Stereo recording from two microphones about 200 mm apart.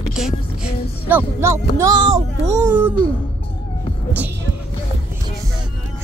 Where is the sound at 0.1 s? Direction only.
5° right (ahead or behind).